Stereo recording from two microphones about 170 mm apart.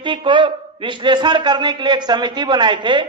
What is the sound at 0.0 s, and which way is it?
A man's voice, 30° right (ahead or behind).